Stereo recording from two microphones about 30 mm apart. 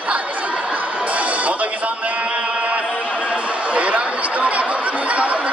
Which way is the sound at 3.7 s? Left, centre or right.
Right.